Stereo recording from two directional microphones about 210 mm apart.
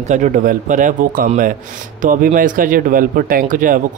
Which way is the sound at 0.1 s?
40° right (ahead or behind).